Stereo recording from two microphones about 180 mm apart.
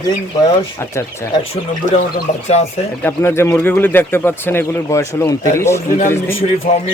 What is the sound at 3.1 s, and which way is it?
Speech, 15° left (ahead or behind).